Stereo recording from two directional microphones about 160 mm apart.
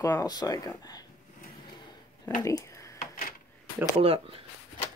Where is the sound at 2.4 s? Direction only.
20° left (ahead or behind).